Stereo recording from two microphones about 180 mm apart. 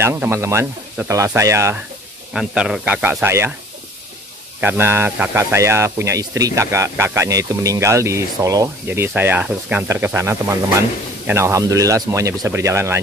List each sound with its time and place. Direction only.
0.0 s speech: 15° right (ahead or behind)
2.3 s speech: 5° right (ahead or behind)
4.6 s speech: 15° right (ahead or behind)